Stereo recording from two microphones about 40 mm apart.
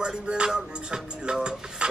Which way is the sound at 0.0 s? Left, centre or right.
Right.